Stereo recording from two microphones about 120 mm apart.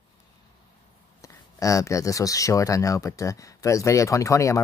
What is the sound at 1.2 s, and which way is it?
Speech, 25° left (ahead or behind).